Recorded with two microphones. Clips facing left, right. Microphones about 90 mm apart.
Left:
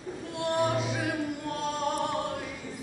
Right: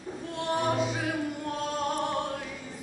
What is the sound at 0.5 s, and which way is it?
Music, centre (ahead or behind).